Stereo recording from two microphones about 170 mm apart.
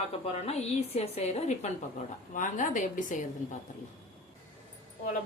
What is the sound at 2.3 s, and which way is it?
Speech, 50° left (ahead or behind).